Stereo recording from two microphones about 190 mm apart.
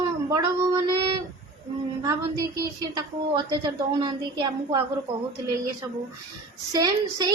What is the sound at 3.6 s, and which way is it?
Speech, 20° right (ahead or behind).